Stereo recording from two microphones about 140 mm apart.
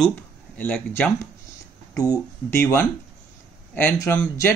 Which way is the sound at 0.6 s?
10° left (ahead or behind).